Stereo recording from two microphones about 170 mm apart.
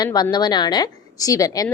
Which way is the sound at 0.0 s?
25° left (ahead or behind).